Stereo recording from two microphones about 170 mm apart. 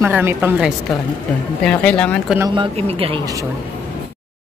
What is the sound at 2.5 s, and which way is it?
Speech, 35° right (ahead or behind).